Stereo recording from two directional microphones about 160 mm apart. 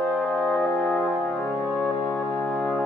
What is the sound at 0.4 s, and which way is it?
Music, 5° left (ahead or behind).